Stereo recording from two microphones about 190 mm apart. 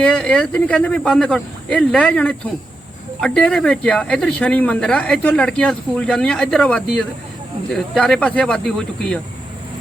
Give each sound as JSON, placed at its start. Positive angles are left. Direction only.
{"t": 0.0, "sound": "speech", "side_deg": 5}